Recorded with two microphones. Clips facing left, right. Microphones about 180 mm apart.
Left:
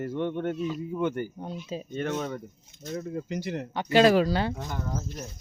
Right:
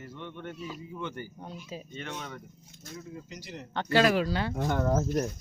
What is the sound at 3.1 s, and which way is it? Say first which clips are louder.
Speech: left 11 dB; 55° left (ahead or behind).